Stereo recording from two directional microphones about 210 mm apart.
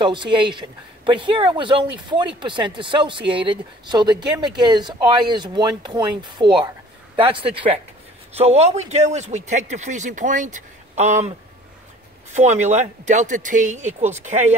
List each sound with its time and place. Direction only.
0.0 s speech: 20° right (ahead or behind)